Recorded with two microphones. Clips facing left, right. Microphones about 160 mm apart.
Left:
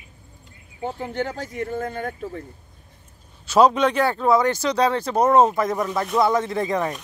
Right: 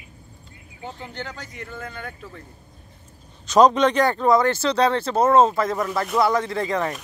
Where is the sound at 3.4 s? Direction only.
5° left (ahead or behind).